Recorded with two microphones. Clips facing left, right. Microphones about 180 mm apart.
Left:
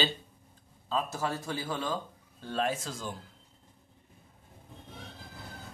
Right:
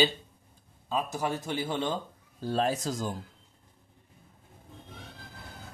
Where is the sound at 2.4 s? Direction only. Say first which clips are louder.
Right 4 dB; 35° right (ahead or behind).